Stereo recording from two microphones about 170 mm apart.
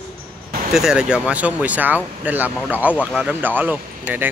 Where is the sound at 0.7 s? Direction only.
5° right (ahead or behind).